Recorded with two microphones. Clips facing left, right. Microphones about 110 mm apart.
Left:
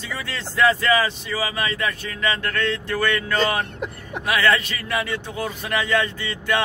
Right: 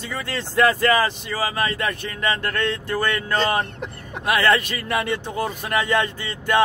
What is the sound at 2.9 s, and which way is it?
Speech, 35° right (ahead or behind).